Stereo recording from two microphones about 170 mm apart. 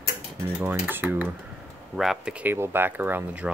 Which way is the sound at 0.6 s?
10° right (ahead or behind).